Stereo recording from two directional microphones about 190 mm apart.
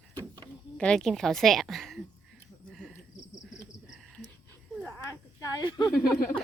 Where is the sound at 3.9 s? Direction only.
Centre (ahead or behind).